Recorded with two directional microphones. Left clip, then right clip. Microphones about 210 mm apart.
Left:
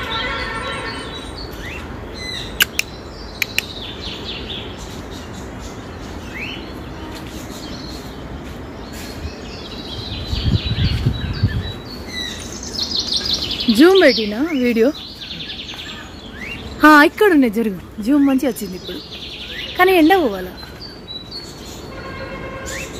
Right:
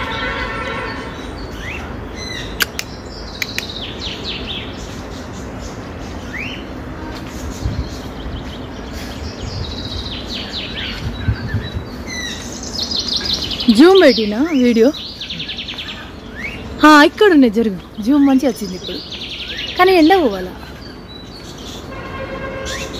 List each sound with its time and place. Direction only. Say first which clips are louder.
12.7 s bird vocalization: right 1 dB; centre (ahead or behind)
16.8 s speech: right 2 dB; centre (ahead or behind)
19.8 s speech: right 2 dB; centre (ahead or behind)